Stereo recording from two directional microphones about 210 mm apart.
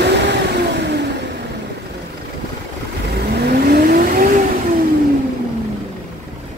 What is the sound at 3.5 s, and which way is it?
Vehicle, 45° right (ahead or behind).